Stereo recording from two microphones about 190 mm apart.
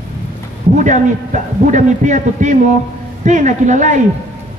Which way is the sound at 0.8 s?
40° right (ahead or behind).